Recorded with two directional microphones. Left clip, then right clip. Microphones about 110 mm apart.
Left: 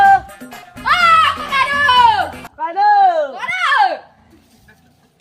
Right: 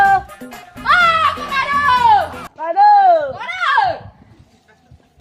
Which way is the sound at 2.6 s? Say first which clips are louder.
Right 2 dB; 35° right (ahead or behind).